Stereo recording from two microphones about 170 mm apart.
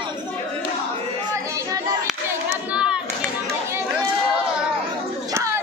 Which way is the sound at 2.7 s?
5° right (ahead or behind).